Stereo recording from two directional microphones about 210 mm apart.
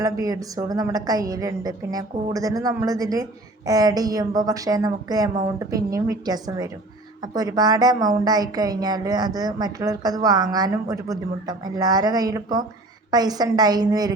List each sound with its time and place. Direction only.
0.0 s a woman's voice: 15° right (ahead or behind)